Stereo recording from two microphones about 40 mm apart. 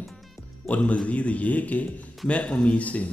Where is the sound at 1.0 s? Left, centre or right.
Left.